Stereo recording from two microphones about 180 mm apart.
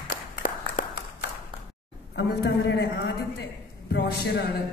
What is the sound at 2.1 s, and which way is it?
A woman's voice, 70° left (ahead or behind).